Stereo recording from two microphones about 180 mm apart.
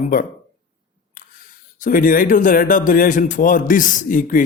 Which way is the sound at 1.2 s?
50° left (ahead or behind).